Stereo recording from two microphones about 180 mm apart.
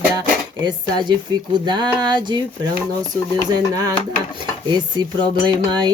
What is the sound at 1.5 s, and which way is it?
Music, 25° right (ahead or behind).